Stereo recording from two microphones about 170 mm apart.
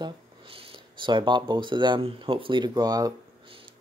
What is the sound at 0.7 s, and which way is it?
Speech, 30° right (ahead or behind).